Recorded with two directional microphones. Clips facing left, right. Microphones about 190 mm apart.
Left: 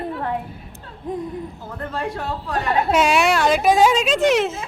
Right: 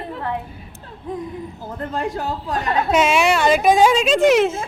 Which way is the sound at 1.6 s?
15° right (ahead or behind).